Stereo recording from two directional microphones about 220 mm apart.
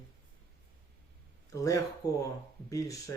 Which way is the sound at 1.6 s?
15° left (ahead or behind).